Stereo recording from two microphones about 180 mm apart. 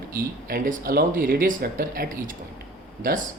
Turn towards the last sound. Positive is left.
turn(degrees=-50)  # may be behind; listen again after turning